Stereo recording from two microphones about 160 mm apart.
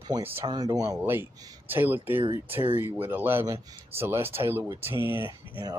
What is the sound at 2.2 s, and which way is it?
Speech, 35° right (ahead or behind).